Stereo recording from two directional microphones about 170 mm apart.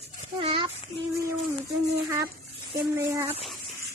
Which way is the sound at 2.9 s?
15° right (ahead or behind).